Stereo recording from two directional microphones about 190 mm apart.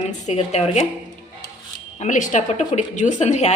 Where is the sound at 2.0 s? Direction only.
40° left (ahead or behind).